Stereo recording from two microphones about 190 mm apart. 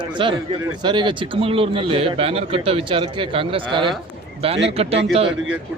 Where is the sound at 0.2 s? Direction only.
25° right (ahead or behind).